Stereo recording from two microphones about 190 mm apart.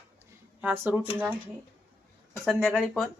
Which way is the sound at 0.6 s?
10° right (ahead or behind).